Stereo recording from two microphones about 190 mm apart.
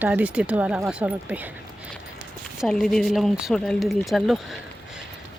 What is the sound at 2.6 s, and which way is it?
Speech, centre (ahead or behind).